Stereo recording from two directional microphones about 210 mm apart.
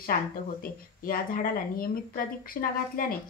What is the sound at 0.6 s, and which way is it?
A woman's voice, 45° left (ahead or behind).